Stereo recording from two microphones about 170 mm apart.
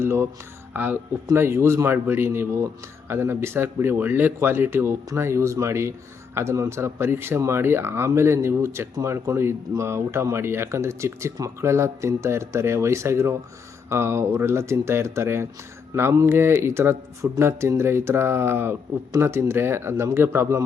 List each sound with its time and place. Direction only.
0.0 s speech: 15° right (ahead or behind)